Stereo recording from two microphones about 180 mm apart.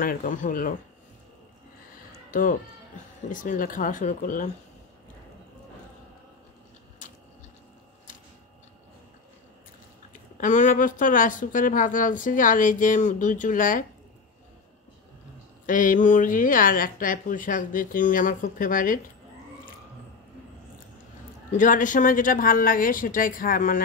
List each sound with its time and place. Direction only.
0.0 s speech: 50° left (ahead or behind)
3.3 s speech: 50° left (ahead or behind)
10.3 s speech: 45° left (ahead or behind)
15.6 s speech: 50° left (ahead or behind)
21.5 s speech: 45° left (ahead or behind)